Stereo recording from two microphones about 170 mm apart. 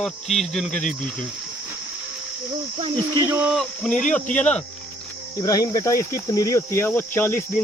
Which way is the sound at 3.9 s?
50° left (ahead or behind).